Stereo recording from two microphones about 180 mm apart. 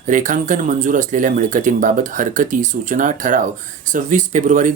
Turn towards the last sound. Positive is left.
turn(degrees=-45)  # may be behind; listen again after turning